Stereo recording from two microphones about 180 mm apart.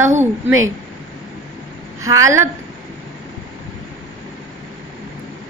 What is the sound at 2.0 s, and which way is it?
Speech, 15° right (ahead or behind).